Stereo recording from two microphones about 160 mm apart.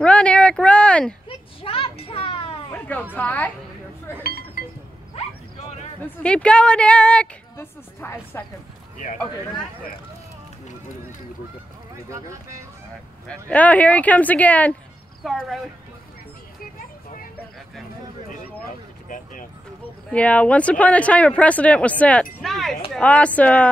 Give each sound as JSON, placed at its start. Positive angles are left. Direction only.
{"t": 0.0, "sound": "a sound", "side_deg": 5}
{"t": 1.6, "sound": "children playing", "side_deg": 35}
{"t": 2.7, "sound": "a sound", "side_deg": 10}
{"t": 3.2, "sound": "speech", "side_deg": 10}
{"t": 4.2, "sound": "chink", "side_deg": 70}
{"t": 6.2, "sound": "a woman's voice", "side_deg": 5}
{"t": 12.1, "sound": "speech", "side_deg": -20}
{"t": 13.3, "sound": "speech", "side_deg": 10}
{"t": 15.2, "sound": "speech", "side_deg": 0}
{"t": 19.0, "sound": "speech", "side_deg": 55}
{"t": 20.1, "sound": "speech", "side_deg": 10}